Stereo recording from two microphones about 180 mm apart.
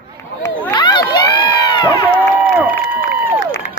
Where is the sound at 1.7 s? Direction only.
25° left (ahead or behind).